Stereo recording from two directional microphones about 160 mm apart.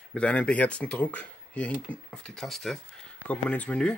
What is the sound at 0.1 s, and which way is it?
Speech, 5° left (ahead or behind).